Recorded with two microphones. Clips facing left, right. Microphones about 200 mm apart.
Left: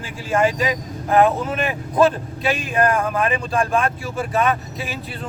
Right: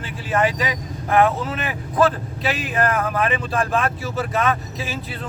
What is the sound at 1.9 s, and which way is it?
Speech, 25° left (ahead or behind).